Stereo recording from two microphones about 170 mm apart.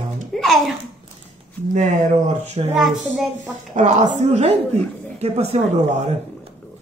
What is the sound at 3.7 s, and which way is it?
A woman's voice, 45° right (ahead or behind).